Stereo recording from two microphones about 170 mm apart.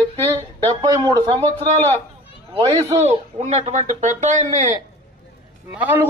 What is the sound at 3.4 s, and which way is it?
A man's voice, 45° right (ahead or behind).